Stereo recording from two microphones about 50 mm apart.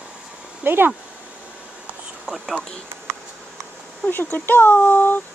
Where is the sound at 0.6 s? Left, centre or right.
Right.